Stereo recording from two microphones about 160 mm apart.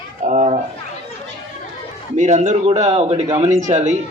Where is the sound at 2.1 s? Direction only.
50° right (ahead or behind).